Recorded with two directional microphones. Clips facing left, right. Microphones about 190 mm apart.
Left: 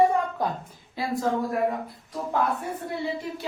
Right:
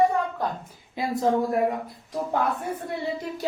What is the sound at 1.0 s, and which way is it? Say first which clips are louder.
Speech: right 2 dB; 20° right (ahead or behind).